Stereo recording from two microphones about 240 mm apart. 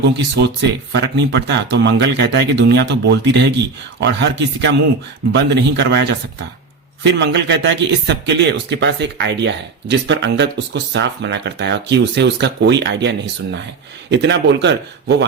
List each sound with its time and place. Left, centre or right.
0.3 s speech: right